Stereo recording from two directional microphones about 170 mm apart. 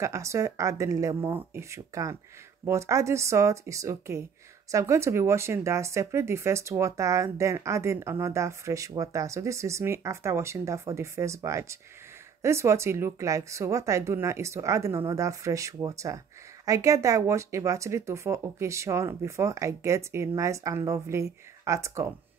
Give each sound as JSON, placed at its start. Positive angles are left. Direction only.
{"t": 0.0, "sound": "speech", "side_deg": -15}